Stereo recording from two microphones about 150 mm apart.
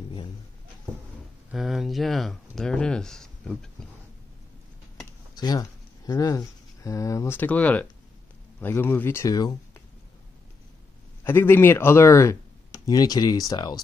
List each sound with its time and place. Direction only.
1.5 s speech: centre (ahead or behind)
5.3 s speech: 25° left (ahead or behind)
11.2 s speech: 15° left (ahead or behind)